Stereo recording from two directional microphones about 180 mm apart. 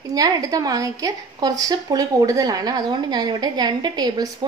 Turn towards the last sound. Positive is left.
turn(degrees=-25)  # may be behind; listen again after turning